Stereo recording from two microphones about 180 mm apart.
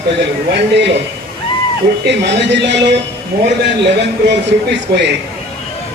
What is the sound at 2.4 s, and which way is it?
Speech, 75° right (ahead or behind).